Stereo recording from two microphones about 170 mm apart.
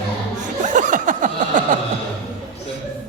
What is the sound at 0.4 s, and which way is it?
Chuckle, 45° right (ahead or behind).